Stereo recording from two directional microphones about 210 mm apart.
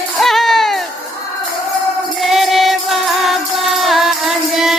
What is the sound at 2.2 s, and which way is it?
Music, centre (ahead or behind).